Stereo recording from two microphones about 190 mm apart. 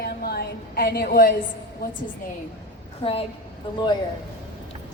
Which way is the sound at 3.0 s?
30° left (ahead or behind).